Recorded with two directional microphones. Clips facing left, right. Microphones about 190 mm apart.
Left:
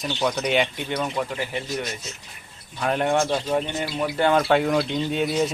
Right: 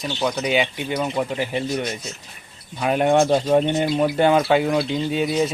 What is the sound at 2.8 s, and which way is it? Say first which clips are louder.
Speech: right 4 dB; 15° right (ahead or behind).